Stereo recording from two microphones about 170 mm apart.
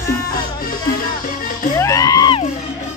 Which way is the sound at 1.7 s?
20° left (ahead or behind).